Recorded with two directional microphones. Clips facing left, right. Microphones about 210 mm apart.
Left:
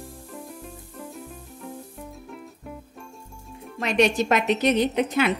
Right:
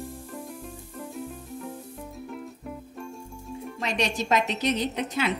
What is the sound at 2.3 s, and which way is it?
Music, centre (ahead or behind).